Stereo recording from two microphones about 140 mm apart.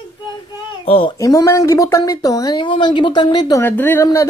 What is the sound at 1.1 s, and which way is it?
Speech, 25° left (ahead or behind).